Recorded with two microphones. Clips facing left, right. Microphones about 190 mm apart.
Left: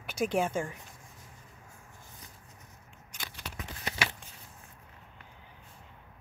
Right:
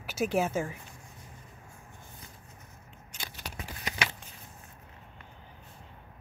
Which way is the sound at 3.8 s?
30° left (ahead or behind).